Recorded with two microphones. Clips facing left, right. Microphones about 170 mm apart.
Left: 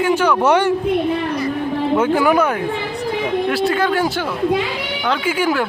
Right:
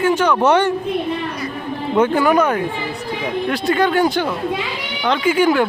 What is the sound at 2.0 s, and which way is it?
Speech, 5° left (ahead or behind).